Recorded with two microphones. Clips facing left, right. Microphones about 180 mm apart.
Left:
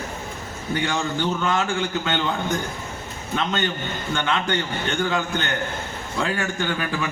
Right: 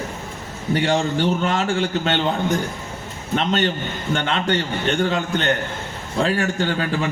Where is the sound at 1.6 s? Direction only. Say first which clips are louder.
Right 3 dB; 35° right (ahead or behind).